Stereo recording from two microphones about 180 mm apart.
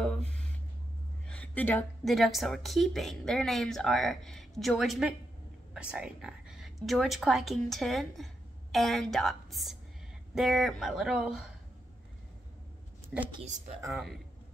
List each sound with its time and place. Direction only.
0.0 s a sound: 5° left (ahead or behind)
1.2 s a woman's voice: 5° left (ahead or behind)
13.3 s speech: 35° right (ahead or behind)
13.8 s a woman's voice: centre (ahead or behind)